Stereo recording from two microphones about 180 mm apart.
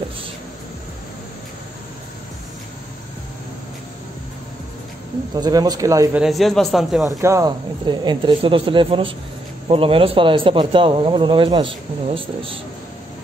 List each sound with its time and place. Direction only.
5.3 s speech: 20° right (ahead or behind)
6.1 s a man's voice: centre (ahead or behind)
7.1 s speech: 15° right (ahead or behind)